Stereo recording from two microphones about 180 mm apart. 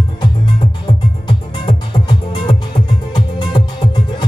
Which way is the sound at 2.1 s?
30° left (ahead or behind).